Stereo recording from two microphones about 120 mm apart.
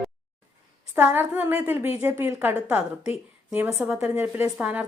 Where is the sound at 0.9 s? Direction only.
15° right (ahead or behind).